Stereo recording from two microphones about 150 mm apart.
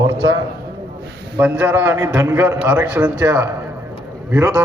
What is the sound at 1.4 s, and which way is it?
A man's voice, 10° right (ahead or behind).